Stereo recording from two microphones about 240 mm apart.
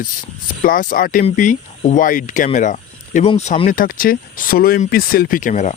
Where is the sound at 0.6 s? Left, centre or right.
Left.